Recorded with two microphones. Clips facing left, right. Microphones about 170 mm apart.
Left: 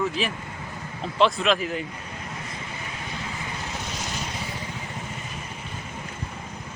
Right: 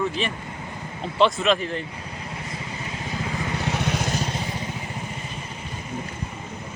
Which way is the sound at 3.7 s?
70° right (ahead or behind).